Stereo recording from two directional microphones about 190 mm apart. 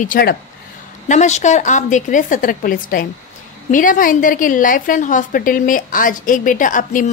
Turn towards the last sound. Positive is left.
turn(degrees=45)  # may be behind; listen again after turning